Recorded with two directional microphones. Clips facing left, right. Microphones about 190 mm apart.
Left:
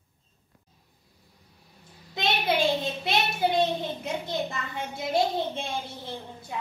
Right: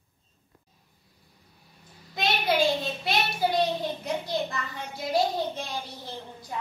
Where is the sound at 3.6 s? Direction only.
20° left (ahead or behind).